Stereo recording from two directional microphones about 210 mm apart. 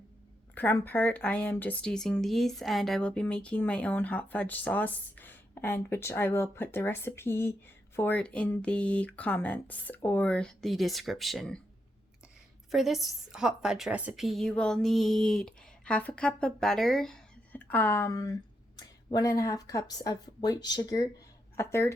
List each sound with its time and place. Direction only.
0.5 s a woman's voice: 10° left (ahead or behind)
12.7 s a woman's voice: centre (ahead or behind)